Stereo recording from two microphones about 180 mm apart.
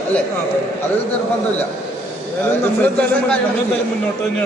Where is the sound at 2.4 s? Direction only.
10° left (ahead or behind).